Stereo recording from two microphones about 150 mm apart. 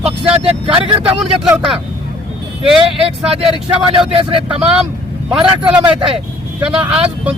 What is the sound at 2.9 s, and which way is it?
Speech, 40° right (ahead or behind).